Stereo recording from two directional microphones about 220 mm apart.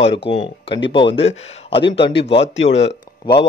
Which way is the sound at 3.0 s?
20° left (ahead or behind).